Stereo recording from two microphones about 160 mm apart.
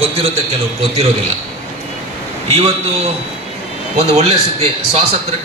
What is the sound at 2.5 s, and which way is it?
A man's voice, 40° right (ahead or behind).